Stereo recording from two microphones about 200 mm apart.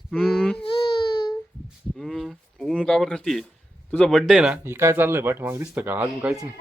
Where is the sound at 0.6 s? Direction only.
25° left (ahead or behind).